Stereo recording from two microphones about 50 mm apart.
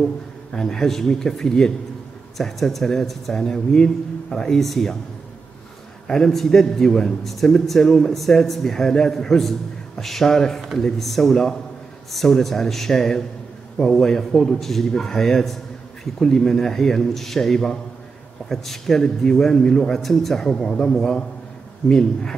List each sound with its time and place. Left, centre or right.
0.5 s a man's voice: centre
6.0 s a man's voice: centre